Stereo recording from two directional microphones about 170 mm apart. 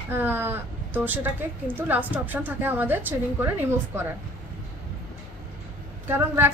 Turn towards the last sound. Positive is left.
turn(degrees=-15)  # may be behind; listen again after turning